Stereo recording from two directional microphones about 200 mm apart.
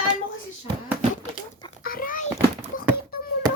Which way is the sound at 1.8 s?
45° left (ahead or behind).